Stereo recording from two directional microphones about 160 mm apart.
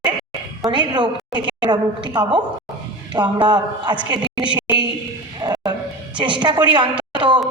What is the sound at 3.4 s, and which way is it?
A woman's voice, 30° right (ahead or behind).